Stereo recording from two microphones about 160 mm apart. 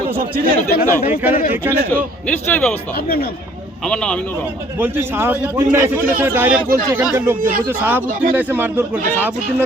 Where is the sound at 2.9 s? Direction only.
70° left (ahead or behind).